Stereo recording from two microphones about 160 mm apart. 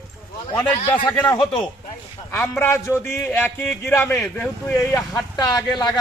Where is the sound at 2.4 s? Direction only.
15° left (ahead or behind).